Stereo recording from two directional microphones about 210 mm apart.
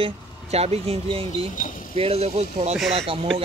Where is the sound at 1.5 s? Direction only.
40° left (ahead or behind).